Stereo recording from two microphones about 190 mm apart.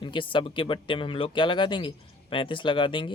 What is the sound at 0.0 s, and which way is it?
Speech, 25° left (ahead or behind).